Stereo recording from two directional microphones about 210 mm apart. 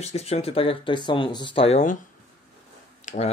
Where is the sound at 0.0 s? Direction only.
30° left (ahead or behind).